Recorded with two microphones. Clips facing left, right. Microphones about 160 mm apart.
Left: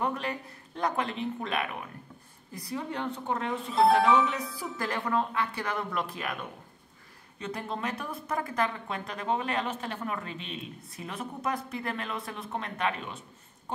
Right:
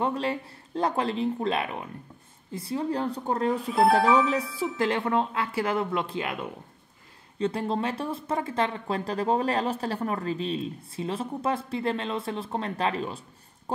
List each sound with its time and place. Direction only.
0.0 s speech: 30° right (ahead or behind)